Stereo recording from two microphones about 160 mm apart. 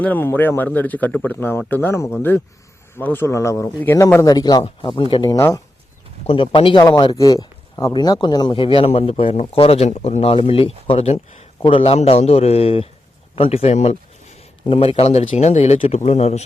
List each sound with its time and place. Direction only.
0.0 s speech: 10° left (ahead or behind); by 5.4 s 30° left (ahead or behind)
5.4 s speech: 15° left (ahead or behind)
6.2 s speech: 35° left (ahead or behind)